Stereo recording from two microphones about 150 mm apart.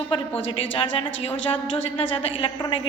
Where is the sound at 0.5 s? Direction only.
40° left (ahead or behind).